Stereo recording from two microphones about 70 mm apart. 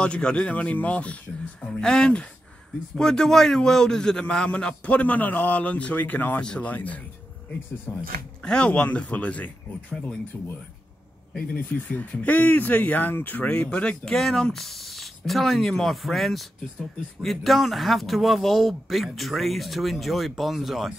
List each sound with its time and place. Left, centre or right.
0.0 s speech: centre
7.9 s speech: left
8.4 s speech: centre
11.9 s speech: left; by 20.9 s centre